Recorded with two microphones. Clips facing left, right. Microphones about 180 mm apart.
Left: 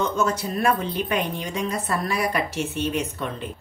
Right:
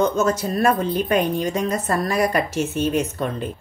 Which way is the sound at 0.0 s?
45° right (ahead or behind).